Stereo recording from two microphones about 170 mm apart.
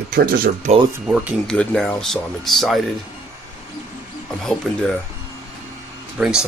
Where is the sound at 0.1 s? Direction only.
60° right (ahead or behind).